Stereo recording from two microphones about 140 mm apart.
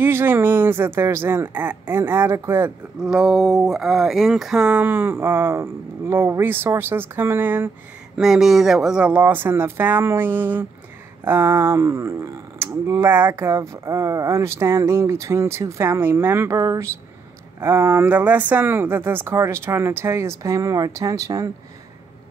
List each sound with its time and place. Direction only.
0.0 s speech: 15° right (ahead or behind)
3.0 s speech: 5° right (ahead or behind)
8.2 s speech: 5° right (ahead or behind); by 21.5 s 25° right (ahead or behind)